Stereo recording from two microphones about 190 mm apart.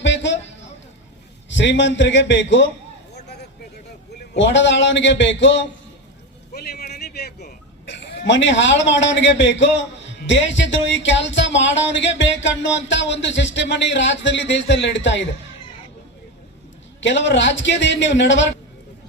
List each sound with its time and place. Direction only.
0.0 s a sound: 70° left (ahead or behind)
1.5 s speech: 75° left (ahead or behind)
4.1 s speech: 70° left (ahead or behind)
6.5 s a sound: 55° left (ahead or behind)
8.2 s speech: 70° left (ahead or behind)
17.0 s speech: 70° left (ahead or behind)